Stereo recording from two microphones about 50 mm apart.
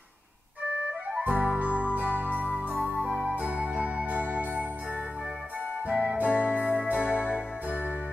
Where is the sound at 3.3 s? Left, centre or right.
Right.